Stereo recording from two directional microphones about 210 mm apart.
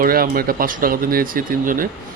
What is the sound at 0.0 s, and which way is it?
Speech, 45° right (ahead or behind).